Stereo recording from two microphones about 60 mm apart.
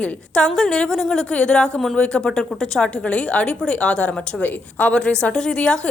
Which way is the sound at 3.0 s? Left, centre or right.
Left.